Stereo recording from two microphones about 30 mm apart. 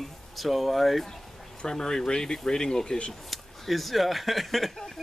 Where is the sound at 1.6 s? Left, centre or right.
Centre.